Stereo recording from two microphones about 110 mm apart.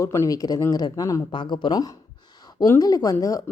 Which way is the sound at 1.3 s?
45° left (ahead or behind).